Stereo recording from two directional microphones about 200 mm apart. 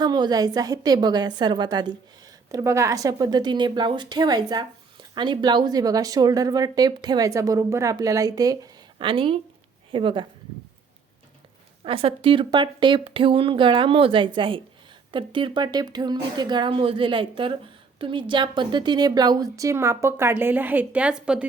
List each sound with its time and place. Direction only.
0.0 s a woman's voice: 20° right (ahead or behind)
11.9 s a woman's voice: 30° right (ahead or behind); by 21.4 s 5° right (ahead or behind)